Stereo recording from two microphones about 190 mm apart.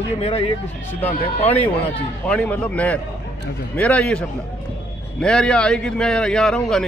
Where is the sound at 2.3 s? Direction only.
5° left (ahead or behind).